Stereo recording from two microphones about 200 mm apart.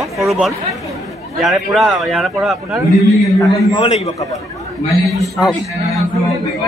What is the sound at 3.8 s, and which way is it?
Speech, 30° left (ahead or behind).